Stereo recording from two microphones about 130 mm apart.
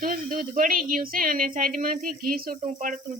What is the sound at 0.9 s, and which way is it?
A woman's voice, 90° right.